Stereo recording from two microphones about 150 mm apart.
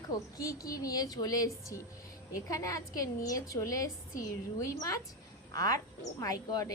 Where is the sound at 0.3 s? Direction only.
25° left (ahead or behind).